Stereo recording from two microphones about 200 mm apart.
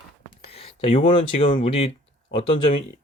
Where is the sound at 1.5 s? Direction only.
40° left (ahead or behind).